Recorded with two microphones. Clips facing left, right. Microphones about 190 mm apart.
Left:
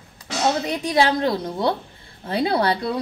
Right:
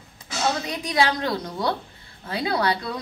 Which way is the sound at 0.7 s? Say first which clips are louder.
Left 4 dB; 30° left (ahead or behind).